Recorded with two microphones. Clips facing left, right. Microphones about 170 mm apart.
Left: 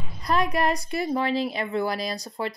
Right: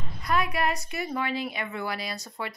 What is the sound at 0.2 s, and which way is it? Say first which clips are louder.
Speech: left 3 dB; 35° left (ahead or behind).